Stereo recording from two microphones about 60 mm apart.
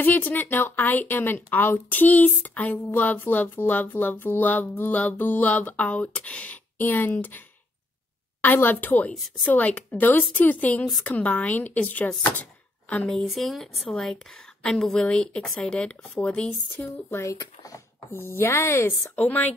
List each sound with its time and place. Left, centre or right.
0.0 s a woman's voice: left
6.8 s a woman's voice: left
8.6 s a woman's voice: left
13.3 s speech: centre
17.1 s speech: left
18.1 s speech: left
19.1 s speech: left